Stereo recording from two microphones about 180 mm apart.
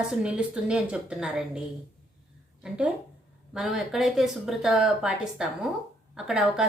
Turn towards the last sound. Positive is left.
turn(degrees=-5)  # may be behind; listen again after turning